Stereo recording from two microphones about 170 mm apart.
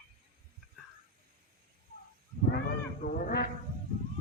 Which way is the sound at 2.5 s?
55° left (ahead or behind).